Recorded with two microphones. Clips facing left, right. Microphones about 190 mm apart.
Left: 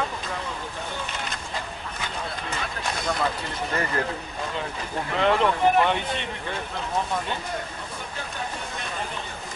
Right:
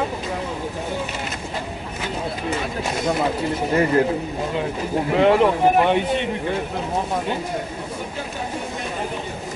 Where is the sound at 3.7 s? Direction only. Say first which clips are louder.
Right 10 dB; 15° right (ahead or behind).